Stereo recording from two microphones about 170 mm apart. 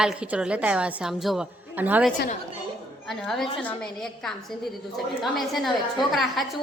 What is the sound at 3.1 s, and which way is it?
A woman's voice, centre (ahead or behind).